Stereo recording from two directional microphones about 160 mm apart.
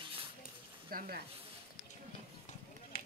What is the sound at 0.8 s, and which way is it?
Sizzle, 65° right (ahead or behind).